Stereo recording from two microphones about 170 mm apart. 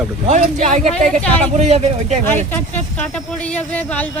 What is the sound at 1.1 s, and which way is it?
Speech, 5° left (ahead or behind).